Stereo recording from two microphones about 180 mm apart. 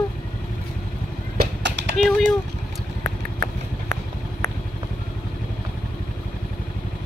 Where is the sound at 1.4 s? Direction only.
75° right (ahead or behind).